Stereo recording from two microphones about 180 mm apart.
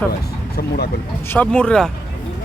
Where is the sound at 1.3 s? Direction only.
5° left (ahead or behind).